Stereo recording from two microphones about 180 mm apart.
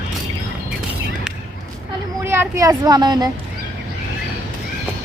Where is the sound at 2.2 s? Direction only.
15° right (ahead or behind).